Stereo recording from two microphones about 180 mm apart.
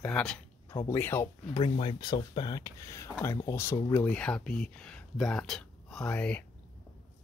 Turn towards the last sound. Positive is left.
turn(degrees=5)  # may be behind; listen again after turning